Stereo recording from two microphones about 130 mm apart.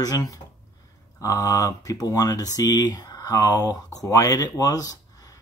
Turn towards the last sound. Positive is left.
turn(degrees=25)  # may be behind; listen again after turning